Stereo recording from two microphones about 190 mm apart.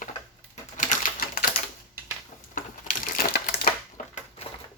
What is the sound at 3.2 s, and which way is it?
Crushing, 50° left (ahead or behind).